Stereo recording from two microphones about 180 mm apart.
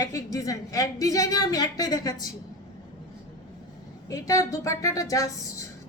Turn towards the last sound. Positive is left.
turn(degrees=20)  # may be behind; listen again after turning